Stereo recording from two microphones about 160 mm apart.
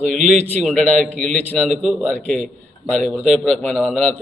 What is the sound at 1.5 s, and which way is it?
Speech, 5° right (ahead or behind).